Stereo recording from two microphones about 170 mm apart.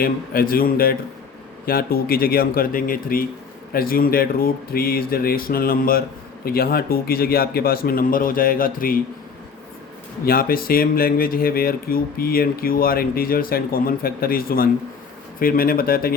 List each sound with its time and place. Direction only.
0.0 s a man's voice: 60° left (ahead or behind)
10.2 s a man's voice: 60° left (ahead or behind)